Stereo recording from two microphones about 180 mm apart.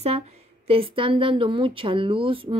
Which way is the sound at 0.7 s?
30° right (ahead or behind).